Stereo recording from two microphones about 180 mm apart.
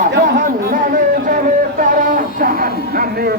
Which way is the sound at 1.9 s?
50° right (ahead or behind).